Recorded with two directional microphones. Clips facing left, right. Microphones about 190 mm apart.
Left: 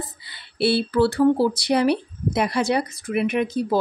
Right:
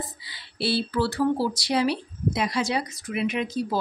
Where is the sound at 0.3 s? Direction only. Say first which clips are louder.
Left 6 dB; 60° left (ahead or behind).